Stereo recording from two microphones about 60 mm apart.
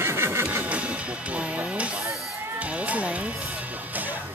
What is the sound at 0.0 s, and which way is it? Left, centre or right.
Music, right.